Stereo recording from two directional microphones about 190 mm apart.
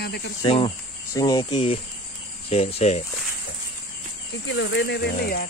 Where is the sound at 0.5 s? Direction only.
30° left (ahead or behind).